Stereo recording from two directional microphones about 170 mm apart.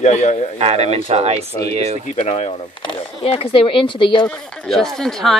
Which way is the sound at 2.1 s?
40° left (ahead or behind).